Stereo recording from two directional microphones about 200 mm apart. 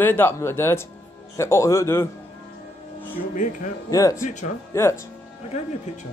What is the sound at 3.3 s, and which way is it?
Speech, 40° left (ahead or behind).